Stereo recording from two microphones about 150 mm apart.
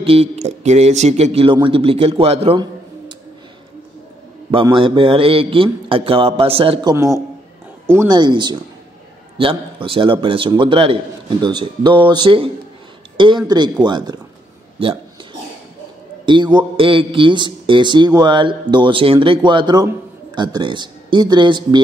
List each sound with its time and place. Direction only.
0.0 s a man's voice: 40° right (ahead or behind)
4.5 s a man's voice: 35° right (ahead or behind)
8.1 s a man's voice: 30° right (ahead or behind)
13.5 s a man's voice: 30° right (ahead or behind)
16.3 s a man's voice: 30° right (ahead or behind)